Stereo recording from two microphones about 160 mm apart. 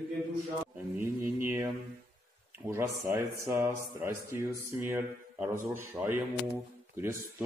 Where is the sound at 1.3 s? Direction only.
15° right (ahead or behind).